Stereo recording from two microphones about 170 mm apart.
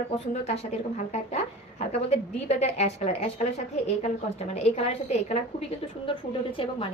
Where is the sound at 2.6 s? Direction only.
40° left (ahead or behind).